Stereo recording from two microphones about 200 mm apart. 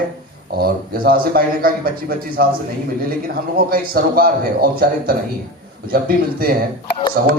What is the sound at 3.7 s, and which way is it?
A man's voice, 45° right (ahead or behind).